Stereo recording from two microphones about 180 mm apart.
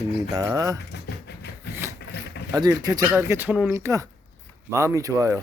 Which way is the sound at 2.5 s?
20° right (ahead or behind).